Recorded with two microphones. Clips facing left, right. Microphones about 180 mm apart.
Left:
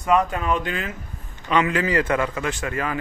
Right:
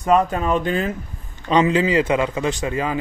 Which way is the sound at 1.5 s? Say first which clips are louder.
Right 4 dB; 20° right (ahead or behind).